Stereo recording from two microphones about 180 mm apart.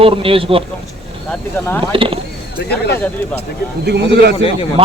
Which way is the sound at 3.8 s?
65° right (ahead or behind).